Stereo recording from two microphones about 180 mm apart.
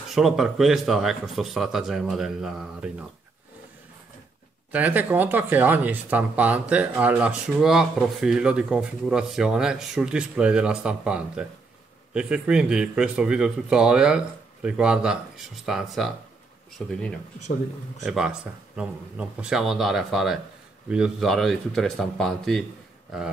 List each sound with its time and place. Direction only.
0.1 s speech: centre (ahead or behind)
4.7 s speech: 10° right (ahead or behind)